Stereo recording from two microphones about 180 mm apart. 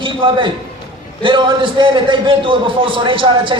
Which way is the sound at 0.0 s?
30° right (ahead or behind).